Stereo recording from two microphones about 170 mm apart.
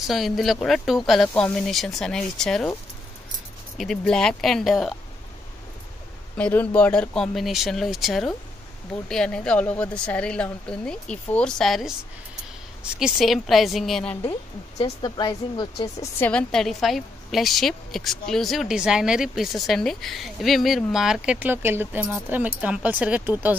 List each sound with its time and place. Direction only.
0.0 s a woman's voice: centre (ahead or behind)
3.7 s a woman's voice: centre (ahead or behind)
6.3 s a woman's voice: 10° left (ahead or behind)
14.8 s speech: 25° left (ahead or behind)
16.2 s a woman's voice: 5° left (ahead or behind); by 23.5 s 10° right (ahead or behind)